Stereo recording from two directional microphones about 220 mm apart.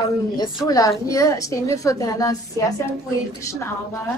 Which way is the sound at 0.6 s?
15° left (ahead or behind).